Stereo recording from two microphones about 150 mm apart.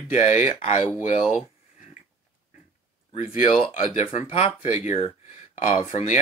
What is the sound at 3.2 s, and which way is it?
Speech, 50° left (ahead or behind).